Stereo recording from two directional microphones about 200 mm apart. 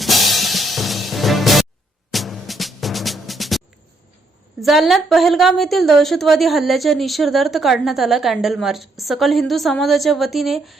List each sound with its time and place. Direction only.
0.0 s music: centre (ahead or behind)
4.6 s a woman's voice: centre (ahead or behind)